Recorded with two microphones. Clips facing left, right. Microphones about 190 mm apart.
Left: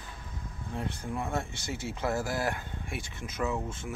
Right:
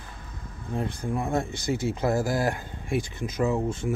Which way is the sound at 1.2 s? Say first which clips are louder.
Right 7 dB; 35° right (ahead or behind).